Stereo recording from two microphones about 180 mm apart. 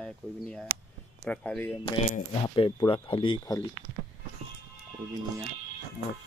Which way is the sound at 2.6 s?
25° left (ahead or behind).